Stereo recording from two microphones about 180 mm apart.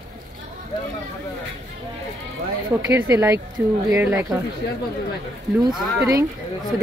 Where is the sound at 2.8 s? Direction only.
15° right (ahead or behind).